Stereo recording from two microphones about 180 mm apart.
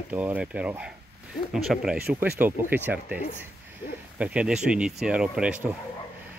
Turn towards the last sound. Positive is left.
turn(degrees=-10)  # may be behind; listen again after turning